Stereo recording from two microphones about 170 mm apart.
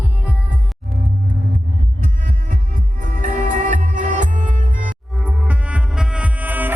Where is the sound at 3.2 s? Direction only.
50° right (ahead or behind).